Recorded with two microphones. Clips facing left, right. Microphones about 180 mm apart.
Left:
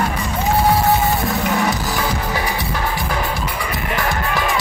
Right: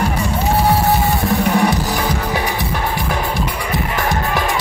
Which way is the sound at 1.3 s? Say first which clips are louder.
Right 4 dB; 35° right (ahead or behind).